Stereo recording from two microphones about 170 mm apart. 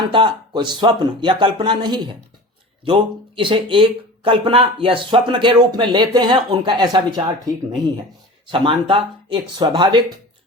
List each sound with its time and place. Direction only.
0.1 s speech: 30° right (ahead or behind)
8.4 s speech: 30° right (ahead or behind)